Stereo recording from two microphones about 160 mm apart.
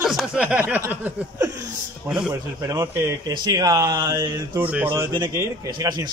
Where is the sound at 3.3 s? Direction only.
25° right (ahead or behind).